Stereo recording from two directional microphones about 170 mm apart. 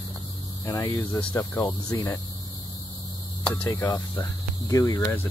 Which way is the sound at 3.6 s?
20° left (ahead or behind).